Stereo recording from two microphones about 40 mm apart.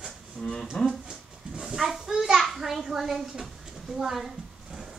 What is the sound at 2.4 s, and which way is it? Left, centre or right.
A child's voice, centre.